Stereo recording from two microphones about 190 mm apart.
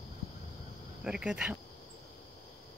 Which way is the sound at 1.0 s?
5° right (ahead or behind).